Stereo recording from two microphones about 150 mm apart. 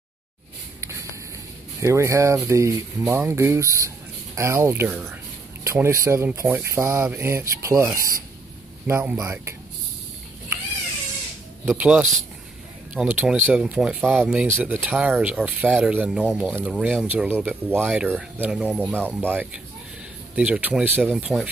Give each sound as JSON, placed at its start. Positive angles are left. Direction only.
{"t": 1.8, "sound": "speech", "side_deg": -20}
{"t": 11.6, "sound": "speech", "side_deg": -10}